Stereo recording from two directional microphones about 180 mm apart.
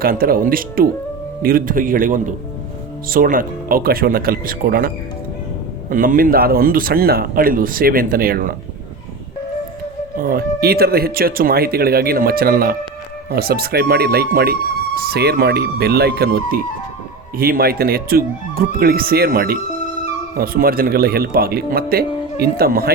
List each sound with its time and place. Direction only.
0.0 s speech: 55° right (ahead or behind)
5.9 s speech: 50° right (ahead or behind)
10.2 s a man's voice: 55° right (ahead or behind)